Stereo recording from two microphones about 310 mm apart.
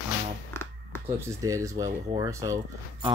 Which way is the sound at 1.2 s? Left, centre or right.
Centre.